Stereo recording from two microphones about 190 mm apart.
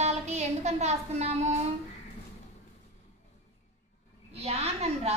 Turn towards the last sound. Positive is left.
turn(degrees=-35)  # may be behind; listen again after turning